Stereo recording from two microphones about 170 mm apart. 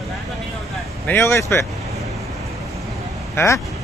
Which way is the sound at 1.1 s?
15° left (ahead or behind).